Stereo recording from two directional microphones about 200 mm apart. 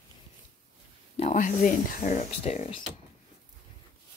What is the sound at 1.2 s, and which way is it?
Speech, 40° left (ahead or behind).